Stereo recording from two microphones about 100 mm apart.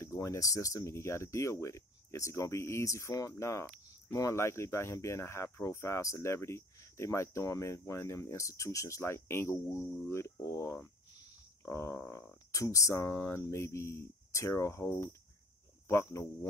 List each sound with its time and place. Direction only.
0.0 s speech: 30° left (ahead or behind)